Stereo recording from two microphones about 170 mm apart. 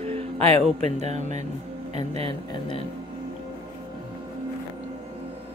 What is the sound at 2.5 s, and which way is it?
Speech, 30° left (ahead or behind).